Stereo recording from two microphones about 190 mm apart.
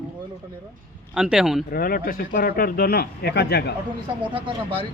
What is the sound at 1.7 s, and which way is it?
Speech, 50° left (ahead or behind).